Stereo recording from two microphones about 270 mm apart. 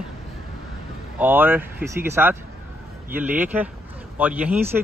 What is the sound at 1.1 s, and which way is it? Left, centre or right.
Speech, centre.